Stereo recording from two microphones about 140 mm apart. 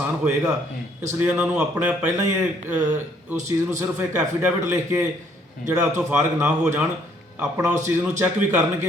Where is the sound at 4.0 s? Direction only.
15° right (ahead or behind).